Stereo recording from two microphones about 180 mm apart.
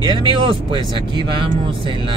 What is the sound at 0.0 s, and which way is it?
Speech, 25° right (ahead or behind).